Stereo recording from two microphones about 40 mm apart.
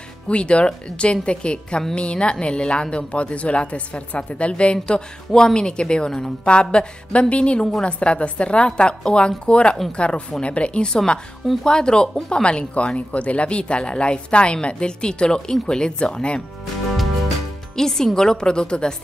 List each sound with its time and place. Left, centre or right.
0.3 s speech: left
17.7 s speech: centre